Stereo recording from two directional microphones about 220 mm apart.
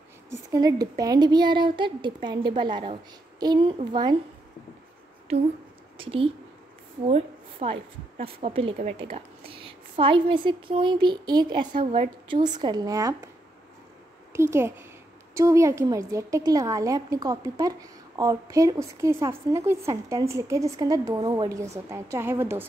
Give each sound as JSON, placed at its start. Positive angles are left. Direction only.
{"t": 0.3, "sound": "a woman's voice", "side_deg": -15}
{"t": 5.9, "sound": "a woman's voice", "side_deg": -25}
{"t": 14.3, "sound": "a woman's voice", "side_deg": -10}